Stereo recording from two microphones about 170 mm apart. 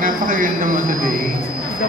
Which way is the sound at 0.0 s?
55° right (ahead or behind).